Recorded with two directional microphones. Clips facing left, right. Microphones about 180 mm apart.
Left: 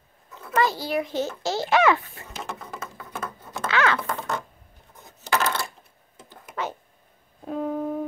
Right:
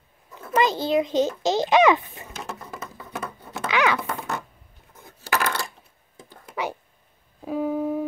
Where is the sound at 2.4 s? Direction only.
Centre (ahead or behind).